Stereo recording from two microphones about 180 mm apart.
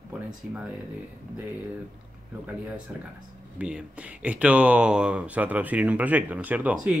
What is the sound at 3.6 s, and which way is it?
Speech, 5° right (ahead or behind).